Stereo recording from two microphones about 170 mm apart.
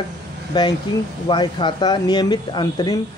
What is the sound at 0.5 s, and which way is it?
Speech, 25° left (ahead or behind).